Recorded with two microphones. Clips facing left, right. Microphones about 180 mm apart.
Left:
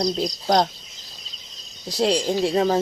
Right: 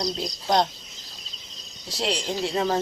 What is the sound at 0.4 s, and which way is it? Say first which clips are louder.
Speech: left 2 dB; 40° left (ahead or behind).